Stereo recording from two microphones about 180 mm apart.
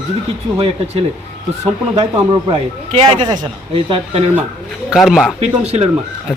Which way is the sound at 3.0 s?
25° right (ahead or behind).